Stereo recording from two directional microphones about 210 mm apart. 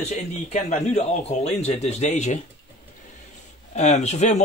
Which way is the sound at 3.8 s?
30° left (ahead or behind).